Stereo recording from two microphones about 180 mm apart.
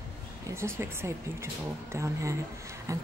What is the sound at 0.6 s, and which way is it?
A woman's voice, 15° right (ahead or behind).